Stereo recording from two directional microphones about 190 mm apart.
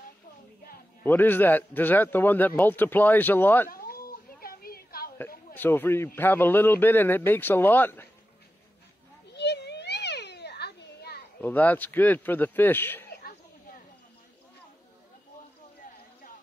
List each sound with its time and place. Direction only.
1.0 s speech: 10° left (ahead or behind)
3.7 s cat: 50° left (ahead or behind)
5.5 s speech: 10° left (ahead or behind)
9.3 s children playing: 60° left (ahead or behind)
11.4 s speech: 10° left (ahead or behind)